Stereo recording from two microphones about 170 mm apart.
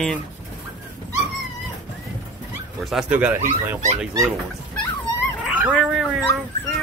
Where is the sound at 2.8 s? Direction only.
5° right (ahead or behind).